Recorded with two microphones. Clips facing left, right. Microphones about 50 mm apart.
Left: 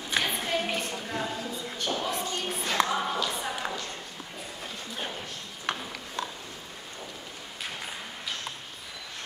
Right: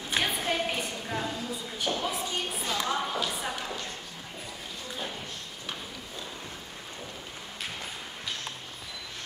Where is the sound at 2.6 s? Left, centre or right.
Left.